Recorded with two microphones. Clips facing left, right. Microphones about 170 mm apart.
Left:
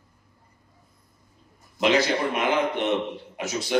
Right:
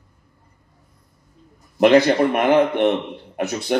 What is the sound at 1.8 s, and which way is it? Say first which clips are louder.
A man's voice: right 8 dB; 55° right (ahead or behind).